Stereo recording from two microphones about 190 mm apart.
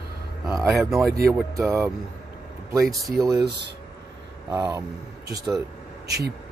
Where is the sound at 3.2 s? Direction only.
20° right (ahead or behind).